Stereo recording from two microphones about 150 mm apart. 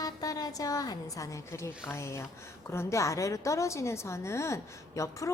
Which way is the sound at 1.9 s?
20° left (ahead or behind).